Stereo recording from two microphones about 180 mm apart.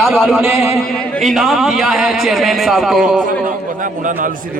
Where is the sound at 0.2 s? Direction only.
Centre (ahead or behind).